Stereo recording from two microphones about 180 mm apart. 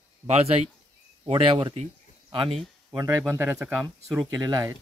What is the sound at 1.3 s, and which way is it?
Speech, 30° right (ahead or behind).